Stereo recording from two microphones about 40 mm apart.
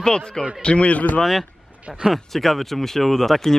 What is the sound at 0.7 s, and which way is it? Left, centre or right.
Speech, left.